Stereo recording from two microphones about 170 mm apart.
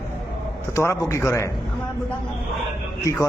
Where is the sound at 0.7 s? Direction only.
15° left (ahead or behind).